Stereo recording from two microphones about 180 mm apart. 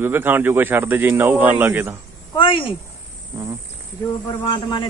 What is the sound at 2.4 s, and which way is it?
Speech, 30° left (ahead or behind).